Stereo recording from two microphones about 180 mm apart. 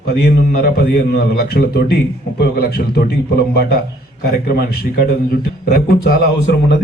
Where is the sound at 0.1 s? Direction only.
60° left (ahead or behind).